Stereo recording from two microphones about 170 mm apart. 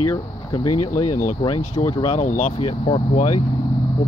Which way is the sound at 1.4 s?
30° left (ahead or behind).